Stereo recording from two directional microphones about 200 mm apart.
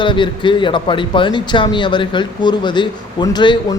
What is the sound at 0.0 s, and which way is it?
Speech, 25° left (ahead or behind).